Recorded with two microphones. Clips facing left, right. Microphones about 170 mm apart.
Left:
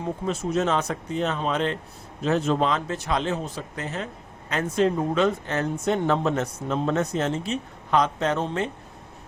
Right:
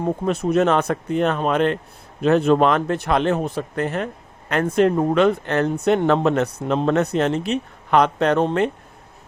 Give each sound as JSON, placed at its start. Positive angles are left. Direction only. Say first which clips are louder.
{"t": 0.0, "sound": "speech", "louder": "right 6 dB", "side_deg": -60}